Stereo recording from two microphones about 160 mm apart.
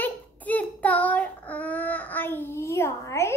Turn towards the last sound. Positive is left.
turn(degrees=15)  # may be behind; listen again after turning